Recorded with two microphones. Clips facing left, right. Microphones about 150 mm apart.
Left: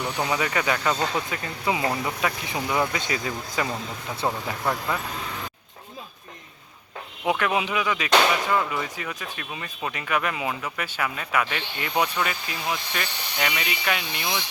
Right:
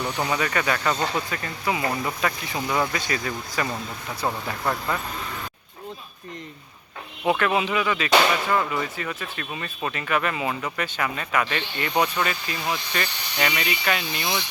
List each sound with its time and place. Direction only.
0.0 s speech: 10° left (ahead or behind)
4.6 s speech: 5° left (ahead or behind)
7.3 s speech: 10° left (ahead or behind)